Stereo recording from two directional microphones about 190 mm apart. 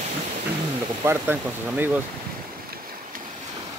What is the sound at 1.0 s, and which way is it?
Speech, 15° right (ahead or behind).